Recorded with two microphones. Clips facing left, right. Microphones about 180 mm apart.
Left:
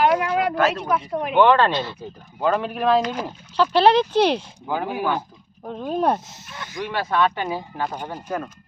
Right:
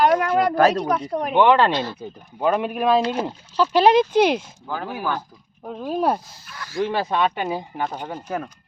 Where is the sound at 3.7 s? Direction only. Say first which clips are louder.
Right 1 dB; 10° right (ahead or behind).